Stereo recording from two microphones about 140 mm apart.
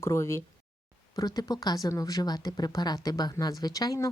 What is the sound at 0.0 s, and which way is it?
Speech, 20° left (ahead or behind).